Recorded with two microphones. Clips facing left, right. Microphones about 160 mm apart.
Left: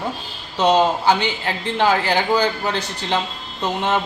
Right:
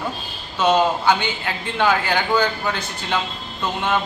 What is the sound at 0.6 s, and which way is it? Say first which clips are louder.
A man's voice: left 1 dB; 30° left (ahead or behind).